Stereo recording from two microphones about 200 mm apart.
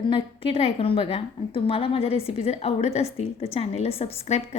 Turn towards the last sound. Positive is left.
turn(degrees=35)  # may be behind; listen again after turning